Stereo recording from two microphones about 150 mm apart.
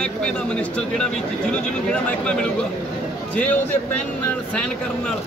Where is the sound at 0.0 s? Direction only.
5° left (ahead or behind).